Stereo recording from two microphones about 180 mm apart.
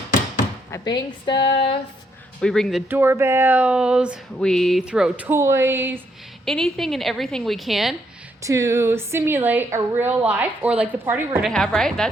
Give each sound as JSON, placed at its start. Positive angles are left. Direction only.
{"t": 0.7, "sound": "a woman's voice", "side_deg": 20}
{"t": 2.4, "sound": "a woman's voice", "side_deg": 0}
{"t": 2.9, "sound": "speech", "side_deg": -15}
{"t": 6.4, "sound": "a woman's voice", "side_deg": 0}
{"t": 8.4, "sound": "speech", "side_deg": -15}
{"t": 11.5, "sound": "a woman's voice", "side_deg": 5}